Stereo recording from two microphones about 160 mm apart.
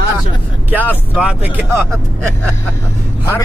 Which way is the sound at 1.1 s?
10° right (ahead or behind).